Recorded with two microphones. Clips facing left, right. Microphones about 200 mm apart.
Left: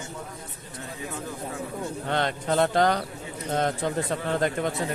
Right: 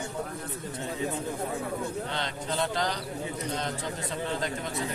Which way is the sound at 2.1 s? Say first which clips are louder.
Left 7 dB; 55° left (ahead or behind).